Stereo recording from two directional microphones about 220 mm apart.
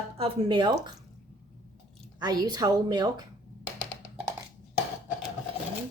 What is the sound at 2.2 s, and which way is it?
A woman's voice, 15° right (ahead or behind).